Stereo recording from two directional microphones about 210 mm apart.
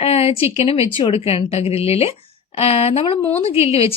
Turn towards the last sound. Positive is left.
turn(degrees=30)  # may be behind; listen again after turning